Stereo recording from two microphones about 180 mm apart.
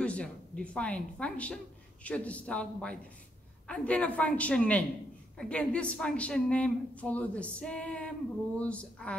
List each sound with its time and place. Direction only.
0.0 s a woman's voice: 5° left (ahead or behind)